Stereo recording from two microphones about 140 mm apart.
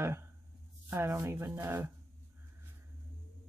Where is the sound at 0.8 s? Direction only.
20° right (ahead or behind).